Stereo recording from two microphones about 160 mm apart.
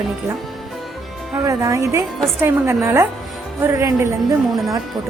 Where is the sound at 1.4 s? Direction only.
20° right (ahead or behind).